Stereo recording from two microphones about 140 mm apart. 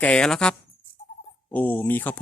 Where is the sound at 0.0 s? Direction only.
5° left (ahead or behind).